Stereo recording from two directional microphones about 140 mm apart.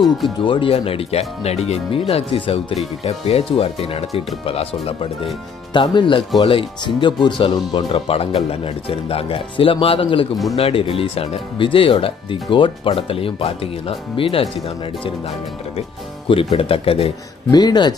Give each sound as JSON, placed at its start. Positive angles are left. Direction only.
{"t": 0.4, "sound": "speech", "side_deg": 40}
{"t": 17.5, "sound": "speech", "side_deg": 30}